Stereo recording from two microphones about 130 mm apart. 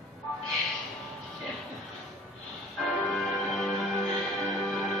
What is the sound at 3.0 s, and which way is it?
Music, 5° left (ahead or behind).